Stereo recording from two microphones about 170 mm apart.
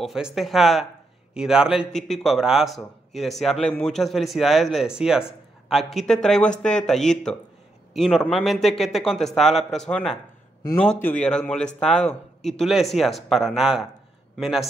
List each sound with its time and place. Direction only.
0.0 s a man's voice: centre (ahead or behind)